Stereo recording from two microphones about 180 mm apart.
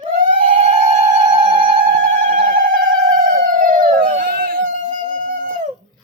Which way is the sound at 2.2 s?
45° right (ahead or behind).